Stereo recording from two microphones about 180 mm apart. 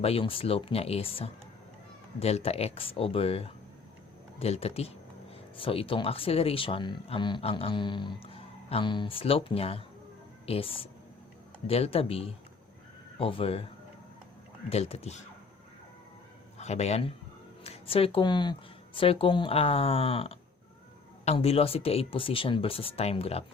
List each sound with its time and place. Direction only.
0.0 s speech: 30° left (ahead or behind)
14.7 s speech: 35° left (ahead or behind)
16.6 s speech: 35° left (ahead or behind)